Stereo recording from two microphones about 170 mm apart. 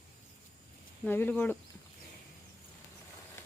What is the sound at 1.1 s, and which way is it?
Speech, 10° left (ahead or behind).